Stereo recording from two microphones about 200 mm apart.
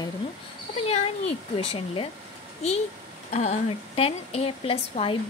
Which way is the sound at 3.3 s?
30° left (ahead or behind).